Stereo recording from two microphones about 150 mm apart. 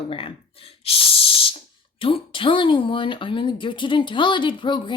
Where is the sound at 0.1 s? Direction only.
35° left (ahead or behind).